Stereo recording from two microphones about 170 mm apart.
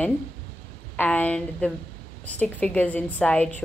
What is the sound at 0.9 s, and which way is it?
A woman's voice, 10° left (ahead or behind).